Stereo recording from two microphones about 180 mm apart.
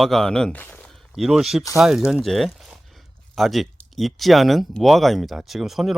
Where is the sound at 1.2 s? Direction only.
5° right (ahead or behind).